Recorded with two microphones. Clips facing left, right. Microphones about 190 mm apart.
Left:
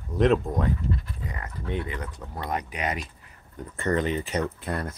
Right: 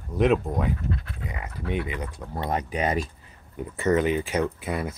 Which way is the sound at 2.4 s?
30° right (ahead or behind).